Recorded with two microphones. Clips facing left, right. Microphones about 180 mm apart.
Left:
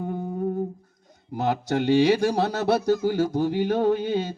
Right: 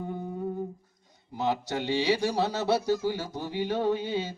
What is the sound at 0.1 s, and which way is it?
Humming, 45° left (ahead or behind).